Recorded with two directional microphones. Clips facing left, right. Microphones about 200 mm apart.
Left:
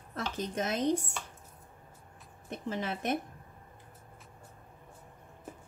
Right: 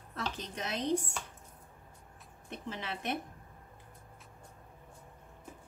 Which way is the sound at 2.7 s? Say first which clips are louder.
Left 5 dB; 45° left (ahead or behind).